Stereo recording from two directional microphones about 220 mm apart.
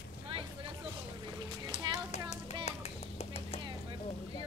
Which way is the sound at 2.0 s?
30° left (ahead or behind).